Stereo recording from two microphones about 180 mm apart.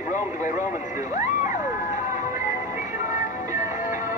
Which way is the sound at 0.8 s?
45° left (ahead or behind).